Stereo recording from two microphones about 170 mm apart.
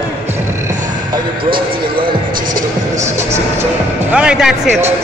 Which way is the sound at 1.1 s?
30° right (ahead or behind).